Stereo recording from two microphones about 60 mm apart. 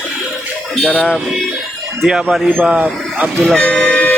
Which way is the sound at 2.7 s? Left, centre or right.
Right.